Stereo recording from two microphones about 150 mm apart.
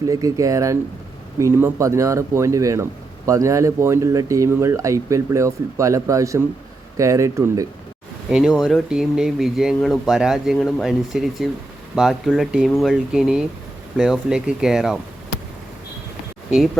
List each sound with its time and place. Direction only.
0.1 s speech: 25° right (ahead or behind)
8.3 s speech: 5° right (ahead or behind)